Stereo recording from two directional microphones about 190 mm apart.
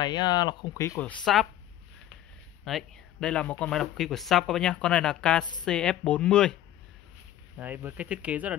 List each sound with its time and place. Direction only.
0.0 s speech: 20° left (ahead or behind); by 1.5 s centre (ahead or behind)
2.6 s speech: 5° left (ahead or behind)
7.5 s speech: 10° right (ahead or behind)